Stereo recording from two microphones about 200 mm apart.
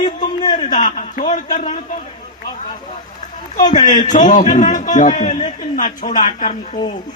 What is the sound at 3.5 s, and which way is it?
A man's voice, 40° left (ahead or behind).